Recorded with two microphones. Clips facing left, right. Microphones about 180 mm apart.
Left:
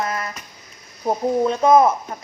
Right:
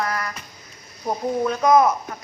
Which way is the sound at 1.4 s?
25° left (ahead or behind).